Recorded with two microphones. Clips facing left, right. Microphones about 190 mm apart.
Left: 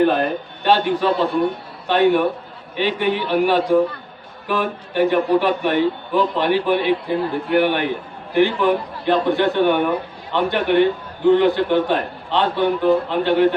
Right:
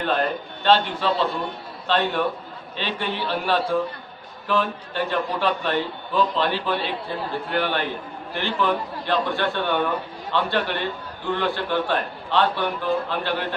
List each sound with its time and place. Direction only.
0.0 s a man's voice: 15° left (ahead or behind)